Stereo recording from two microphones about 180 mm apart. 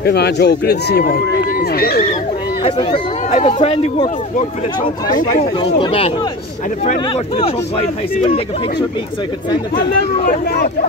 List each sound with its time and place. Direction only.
0.0 s a man's voice: 65° left (ahead or behind)
2.6 s speech: 30° left (ahead or behind)
7.3 s speech: 30° left (ahead or behind)
9.5 s speech: 25° left (ahead or behind)
10.2 s speech: 50° left (ahead or behind)